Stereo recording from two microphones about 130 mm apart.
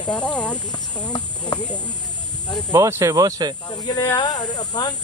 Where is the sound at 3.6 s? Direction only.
30° left (ahead or behind).